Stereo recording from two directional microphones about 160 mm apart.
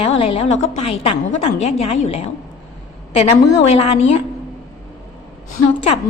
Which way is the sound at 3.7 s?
40° left (ahead or behind).